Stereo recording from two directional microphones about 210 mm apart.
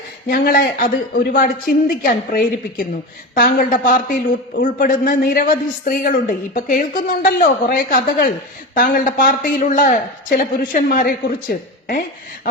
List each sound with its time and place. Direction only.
0.3 s a man's voice: 45° left (ahead or behind)